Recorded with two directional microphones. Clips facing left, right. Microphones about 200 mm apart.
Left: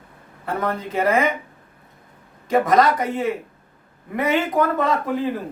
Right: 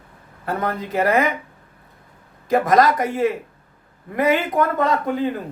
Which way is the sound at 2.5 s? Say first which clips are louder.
Right 1 dB; centre (ahead or behind).